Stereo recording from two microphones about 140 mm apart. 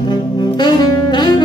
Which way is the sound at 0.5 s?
30° left (ahead or behind).